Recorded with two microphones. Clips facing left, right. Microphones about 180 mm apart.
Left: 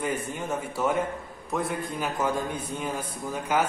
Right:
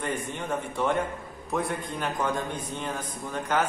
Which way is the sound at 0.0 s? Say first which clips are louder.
Left 2 dB; 5° left (ahead or behind).